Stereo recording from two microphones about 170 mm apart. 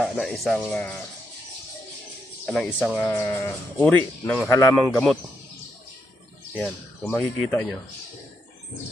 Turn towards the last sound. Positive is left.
turn(degrees=5)  # may be behind; listen again after turning